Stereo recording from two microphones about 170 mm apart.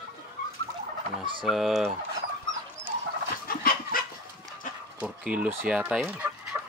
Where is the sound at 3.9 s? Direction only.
55° left (ahead or behind).